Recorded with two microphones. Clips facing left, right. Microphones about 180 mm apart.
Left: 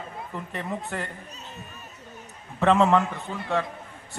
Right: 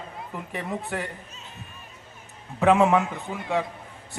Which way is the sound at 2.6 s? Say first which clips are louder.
Right 1 dB; 10° right (ahead or behind).